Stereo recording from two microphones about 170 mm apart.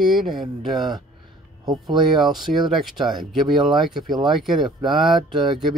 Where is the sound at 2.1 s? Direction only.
Centre (ahead or behind).